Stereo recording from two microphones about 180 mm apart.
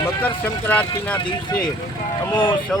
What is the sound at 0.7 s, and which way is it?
Speech, 10° left (ahead or behind).